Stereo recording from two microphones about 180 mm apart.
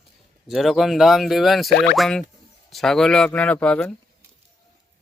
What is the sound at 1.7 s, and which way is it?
Speech, 60° left (ahead or behind).